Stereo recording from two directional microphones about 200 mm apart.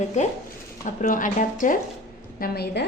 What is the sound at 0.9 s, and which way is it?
Speech, 40° left (ahead or behind).